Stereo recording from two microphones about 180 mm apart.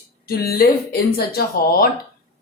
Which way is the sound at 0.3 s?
60° left (ahead or behind).